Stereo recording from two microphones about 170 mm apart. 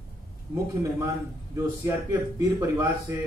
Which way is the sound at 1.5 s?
15° right (ahead or behind).